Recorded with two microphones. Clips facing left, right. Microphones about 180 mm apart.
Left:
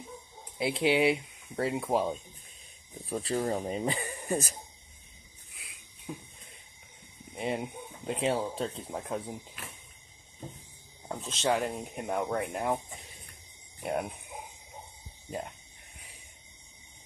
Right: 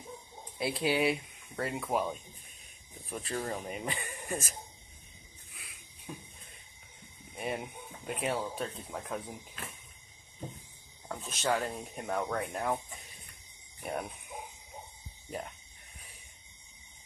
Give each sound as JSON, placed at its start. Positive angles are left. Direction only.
{"t": 0.6, "sound": "speech", "side_deg": 20}
{"t": 7.3, "sound": "speech", "side_deg": 20}
{"t": 11.1, "sound": "speech", "side_deg": 25}
{"t": 15.2, "sound": "speech", "side_deg": 20}